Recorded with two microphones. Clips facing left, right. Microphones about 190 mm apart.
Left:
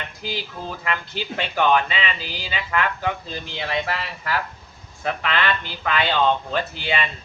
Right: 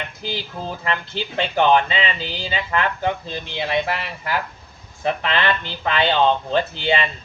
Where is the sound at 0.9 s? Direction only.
25° right (ahead or behind).